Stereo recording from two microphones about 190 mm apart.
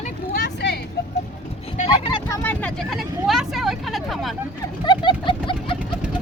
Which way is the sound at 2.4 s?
10° left (ahead or behind).